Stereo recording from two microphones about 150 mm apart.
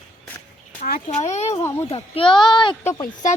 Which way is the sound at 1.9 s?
40° left (ahead or behind).